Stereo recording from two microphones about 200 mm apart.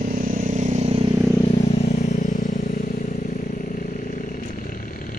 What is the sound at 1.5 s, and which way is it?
Vehicle, 30° left (ahead or behind).